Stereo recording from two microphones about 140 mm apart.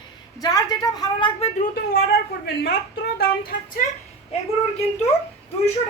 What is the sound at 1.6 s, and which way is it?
A woman's voice, 90° left.